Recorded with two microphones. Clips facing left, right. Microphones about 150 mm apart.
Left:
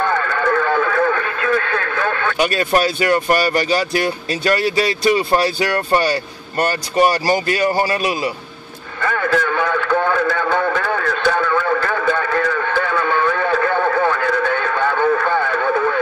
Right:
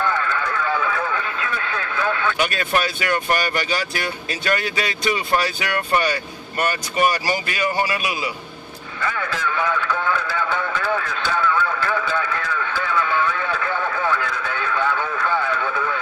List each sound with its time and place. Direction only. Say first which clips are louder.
0.3 s speech: left 6 dB; 50° left (ahead or behind); by 8.3 s 35° left (ahead or behind)
9.0 s radio: left 7 dB; 50° left (ahead or behind)